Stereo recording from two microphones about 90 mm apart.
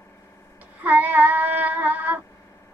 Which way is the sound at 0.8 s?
20° right (ahead or behind).